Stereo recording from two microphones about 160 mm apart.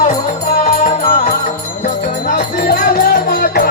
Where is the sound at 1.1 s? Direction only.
50° left (ahead or behind).